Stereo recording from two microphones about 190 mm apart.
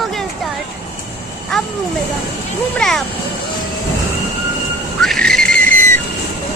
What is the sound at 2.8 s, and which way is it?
Speech, centre (ahead or behind).